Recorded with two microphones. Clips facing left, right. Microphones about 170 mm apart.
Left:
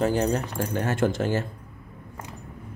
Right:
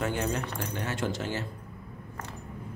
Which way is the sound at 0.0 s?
35° left (ahead or behind).